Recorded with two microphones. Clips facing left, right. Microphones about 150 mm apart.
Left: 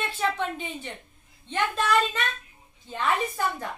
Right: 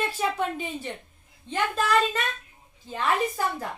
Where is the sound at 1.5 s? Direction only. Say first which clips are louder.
Even; 5° right (ahead or behind).